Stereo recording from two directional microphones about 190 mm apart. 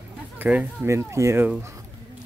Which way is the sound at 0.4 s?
10° right (ahead or behind).